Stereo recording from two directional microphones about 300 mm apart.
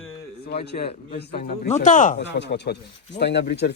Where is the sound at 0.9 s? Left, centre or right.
Left.